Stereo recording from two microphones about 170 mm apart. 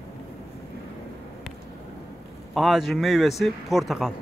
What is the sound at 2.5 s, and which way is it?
A man's voice, centre (ahead or behind).